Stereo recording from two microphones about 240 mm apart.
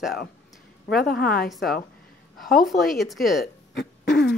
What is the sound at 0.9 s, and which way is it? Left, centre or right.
Speech, left.